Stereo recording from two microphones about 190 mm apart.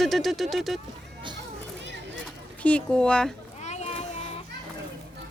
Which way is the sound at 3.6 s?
35° left (ahead or behind).